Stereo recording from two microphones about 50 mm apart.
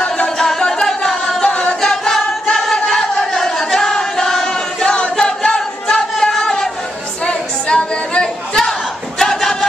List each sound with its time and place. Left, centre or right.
0.4 s a sound: centre
1.5 s a capella: left
1.8 s a capella: centre
9.2 s battle cry: centre